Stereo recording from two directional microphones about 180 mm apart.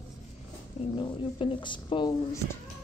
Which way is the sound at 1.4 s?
30° left (ahead or behind).